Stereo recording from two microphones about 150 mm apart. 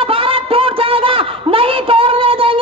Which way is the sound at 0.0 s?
35° right (ahead or behind).